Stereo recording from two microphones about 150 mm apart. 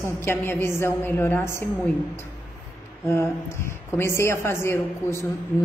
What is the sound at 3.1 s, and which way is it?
A woman's voice, 15° left (ahead or behind).